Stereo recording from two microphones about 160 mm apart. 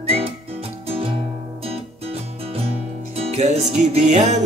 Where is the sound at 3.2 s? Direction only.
40° right (ahead or behind).